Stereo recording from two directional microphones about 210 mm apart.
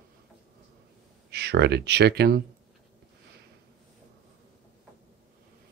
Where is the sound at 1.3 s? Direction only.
50° right (ahead or behind).